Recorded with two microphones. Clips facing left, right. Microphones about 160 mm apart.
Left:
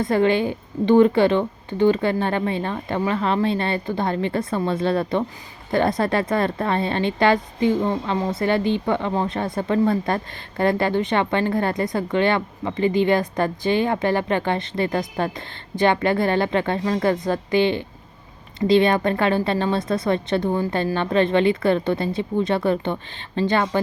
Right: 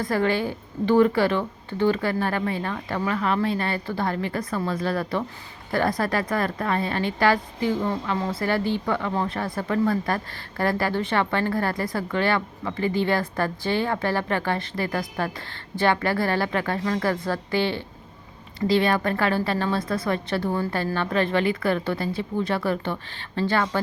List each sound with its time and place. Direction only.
0.0 s a woman's voice: 20° left (ahead or behind)